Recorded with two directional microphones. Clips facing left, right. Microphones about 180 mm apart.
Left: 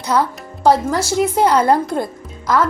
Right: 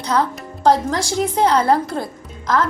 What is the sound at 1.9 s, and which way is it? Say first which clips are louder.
Music: left 4 dB; 10° left (ahead or behind).